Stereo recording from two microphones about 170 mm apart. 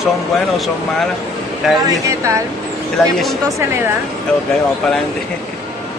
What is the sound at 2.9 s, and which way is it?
Speech, centre (ahead or behind).